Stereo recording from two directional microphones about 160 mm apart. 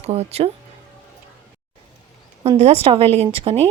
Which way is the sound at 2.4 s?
40° right (ahead or behind).